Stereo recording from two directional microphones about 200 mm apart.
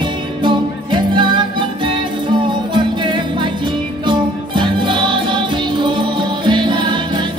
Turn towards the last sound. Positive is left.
turn(degrees=-20)  # may be behind; listen again after turning